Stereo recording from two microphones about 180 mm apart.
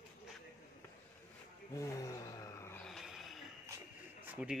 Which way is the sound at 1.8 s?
20° left (ahead or behind).